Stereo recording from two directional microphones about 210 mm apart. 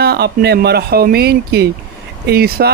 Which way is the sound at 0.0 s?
50° right (ahead or behind).